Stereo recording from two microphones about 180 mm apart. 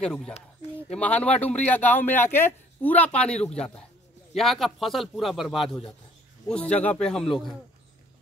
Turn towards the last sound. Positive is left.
turn(degrees=0)  # may be behind; listen again after turning